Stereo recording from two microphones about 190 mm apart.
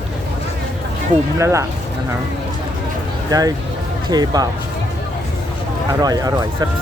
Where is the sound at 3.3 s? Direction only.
20° right (ahead or behind).